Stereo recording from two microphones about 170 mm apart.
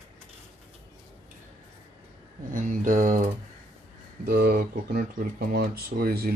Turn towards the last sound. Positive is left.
turn(degrees=-65)  # may be behind; listen again after turning